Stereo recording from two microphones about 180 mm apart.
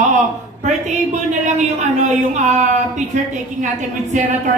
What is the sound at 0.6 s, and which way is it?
A woman's voice, 40° right (ahead or behind).